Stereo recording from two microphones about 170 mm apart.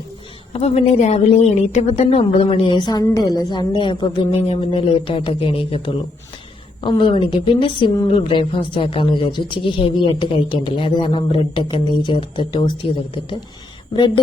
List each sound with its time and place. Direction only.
0.5 s a woman's voice: 35° left (ahead or behind)